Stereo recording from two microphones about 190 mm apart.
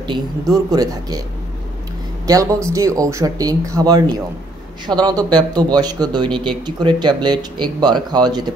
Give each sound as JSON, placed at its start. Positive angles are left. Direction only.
{"t": 0.0, "sound": "speech", "side_deg": -20}
{"t": 2.2, "sound": "speech", "side_deg": -15}